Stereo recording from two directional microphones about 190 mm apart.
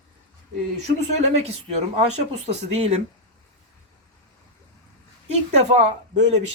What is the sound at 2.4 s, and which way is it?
Speech, 35° right (ahead or behind).